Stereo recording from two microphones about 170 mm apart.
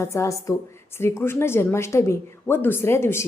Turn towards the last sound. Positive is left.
turn(degrees=15)  # may be behind; listen again after turning